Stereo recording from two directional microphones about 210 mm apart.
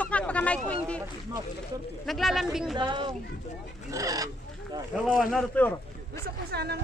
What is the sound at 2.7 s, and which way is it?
Speech, 20° right (ahead or behind).